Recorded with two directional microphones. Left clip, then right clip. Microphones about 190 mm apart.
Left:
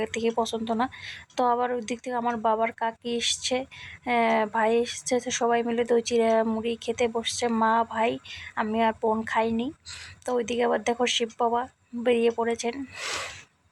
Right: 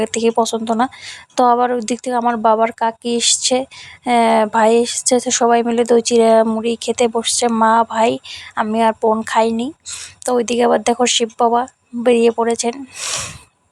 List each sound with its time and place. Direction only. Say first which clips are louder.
0.0 s a woman's voice: right 11 dB; 35° right (ahead or behind)